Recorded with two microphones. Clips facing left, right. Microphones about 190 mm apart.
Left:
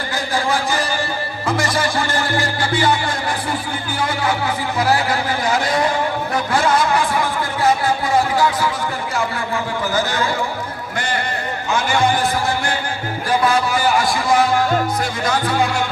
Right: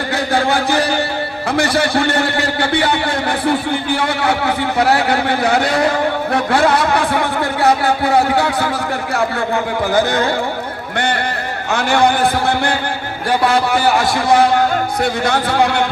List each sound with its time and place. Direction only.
0.3 s chant: 65° right (ahead or behind)
1.5 s a man's voice: 65° right (ahead or behind)
9.9 s a man's voice: 60° right (ahead or behind)